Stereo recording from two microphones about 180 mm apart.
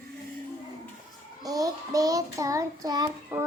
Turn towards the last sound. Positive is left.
turn(degrees=-20)  # may be behind; listen again after turning